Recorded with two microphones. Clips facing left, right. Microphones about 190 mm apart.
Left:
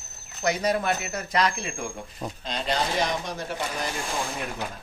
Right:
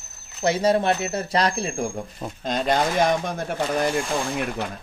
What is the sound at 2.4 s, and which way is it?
Speech, 50° right (ahead or behind).